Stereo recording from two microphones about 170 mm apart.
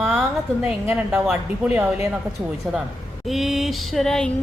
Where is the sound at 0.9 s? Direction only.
Centre (ahead or behind).